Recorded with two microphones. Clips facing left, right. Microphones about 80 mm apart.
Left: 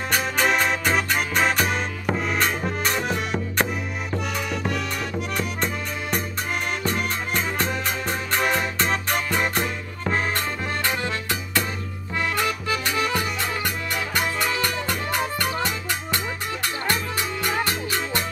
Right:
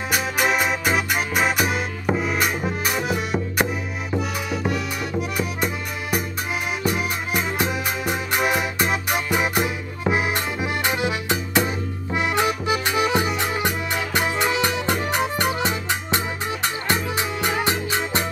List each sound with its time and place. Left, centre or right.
0.1 s music: centre